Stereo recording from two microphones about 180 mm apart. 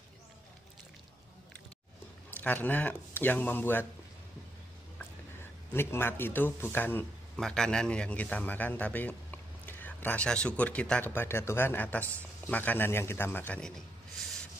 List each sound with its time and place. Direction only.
2.3 s speech: 10° left (ahead or behind)
5.7 s speech: 10° left (ahead or behind)